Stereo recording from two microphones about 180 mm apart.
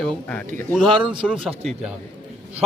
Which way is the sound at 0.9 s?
25° right (ahead or behind).